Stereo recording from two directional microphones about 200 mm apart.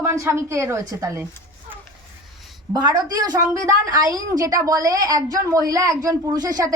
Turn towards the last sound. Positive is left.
turn(degrees=-20)  # may be behind; listen again after turning